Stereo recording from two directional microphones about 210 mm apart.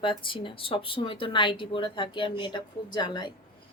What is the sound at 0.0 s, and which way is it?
Speech, 25° left (ahead or behind).